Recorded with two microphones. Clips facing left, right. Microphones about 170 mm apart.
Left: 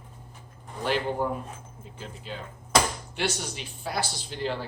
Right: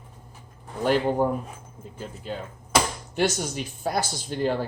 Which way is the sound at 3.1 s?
45° right (ahead or behind).